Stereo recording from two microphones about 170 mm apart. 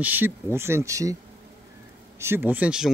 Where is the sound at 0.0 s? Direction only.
10° right (ahead or behind).